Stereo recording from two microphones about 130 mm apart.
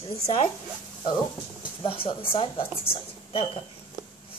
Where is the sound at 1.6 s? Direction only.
40° left (ahead or behind).